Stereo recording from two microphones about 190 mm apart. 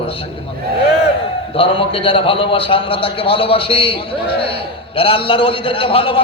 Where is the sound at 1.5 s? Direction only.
30° left (ahead or behind).